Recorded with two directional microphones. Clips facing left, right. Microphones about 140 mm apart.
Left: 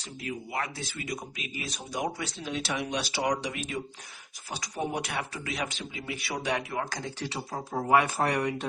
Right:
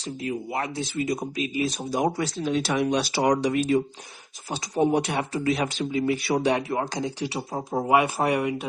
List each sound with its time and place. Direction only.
0.2 s speech: 25° right (ahead or behind)
4.4 s speech: 25° right (ahead or behind)
7.0 s speech: 15° right (ahead or behind)